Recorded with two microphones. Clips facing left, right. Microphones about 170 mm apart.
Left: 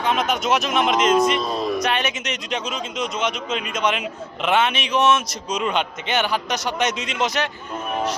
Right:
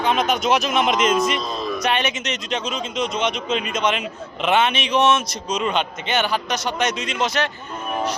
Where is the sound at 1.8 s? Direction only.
5° left (ahead or behind).